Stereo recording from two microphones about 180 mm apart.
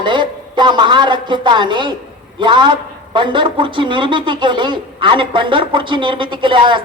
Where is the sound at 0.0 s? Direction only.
25° right (ahead or behind).